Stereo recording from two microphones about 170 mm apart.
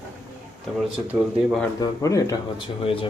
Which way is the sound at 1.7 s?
20° left (ahead or behind).